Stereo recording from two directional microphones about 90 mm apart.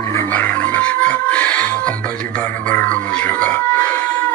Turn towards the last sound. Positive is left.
turn(degrees=15)  # may be behind; listen again after turning